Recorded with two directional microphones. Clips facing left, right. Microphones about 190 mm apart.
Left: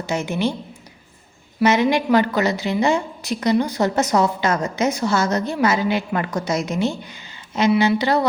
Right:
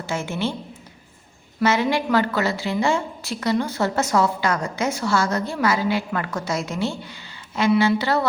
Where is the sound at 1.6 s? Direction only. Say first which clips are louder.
Left 3 dB; 20° left (ahead or behind).